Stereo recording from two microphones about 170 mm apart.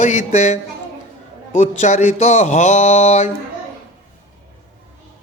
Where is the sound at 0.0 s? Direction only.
45° left (ahead or behind).